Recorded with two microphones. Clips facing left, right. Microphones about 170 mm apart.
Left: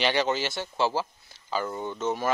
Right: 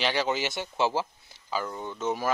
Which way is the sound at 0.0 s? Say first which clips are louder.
Left 2 dB; centre (ahead or behind).